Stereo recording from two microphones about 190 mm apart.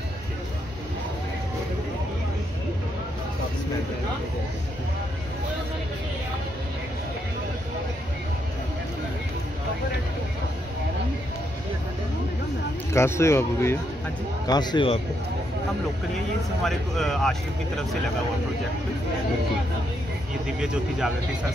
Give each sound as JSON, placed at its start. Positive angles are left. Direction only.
{"t": 12.9, "sound": "speech", "side_deg": 15}
{"t": 16.6, "sound": "speech", "side_deg": 0}
{"t": 20.4, "sound": "speech", "side_deg": -5}